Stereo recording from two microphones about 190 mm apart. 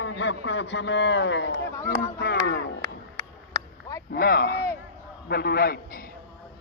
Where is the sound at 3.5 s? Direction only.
20° left (ahead or behind).